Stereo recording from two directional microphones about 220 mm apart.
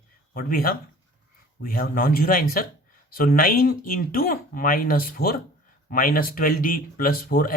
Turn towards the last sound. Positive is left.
turn(degrees=40)  # may be behind; listen again after turning